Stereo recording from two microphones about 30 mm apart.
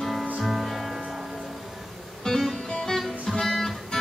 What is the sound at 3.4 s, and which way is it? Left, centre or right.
Music, centre.